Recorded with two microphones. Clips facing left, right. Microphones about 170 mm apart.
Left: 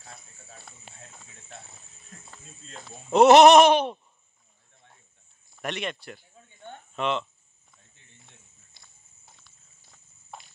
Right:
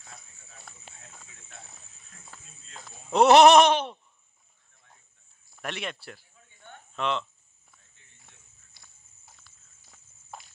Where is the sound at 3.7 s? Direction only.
15° left (ahead or behind).